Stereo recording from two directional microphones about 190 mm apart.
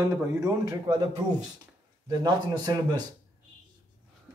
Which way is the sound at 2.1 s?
20° right (ahead or behind).